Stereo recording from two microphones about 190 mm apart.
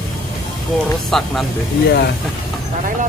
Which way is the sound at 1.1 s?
Centre (ahead or behind).